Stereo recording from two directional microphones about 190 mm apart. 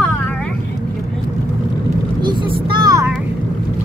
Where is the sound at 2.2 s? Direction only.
25° right (ahead or behind).